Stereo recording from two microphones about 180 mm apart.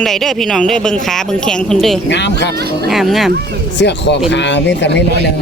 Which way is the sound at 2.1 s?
75° left (ahead or behind).